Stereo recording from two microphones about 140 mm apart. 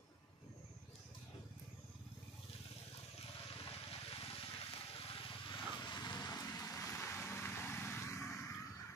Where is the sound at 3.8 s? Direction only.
45° left (ahead or behind).